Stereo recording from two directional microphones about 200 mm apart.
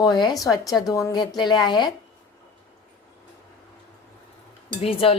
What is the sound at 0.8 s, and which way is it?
A woman's voice, 15° left (ahead or behind).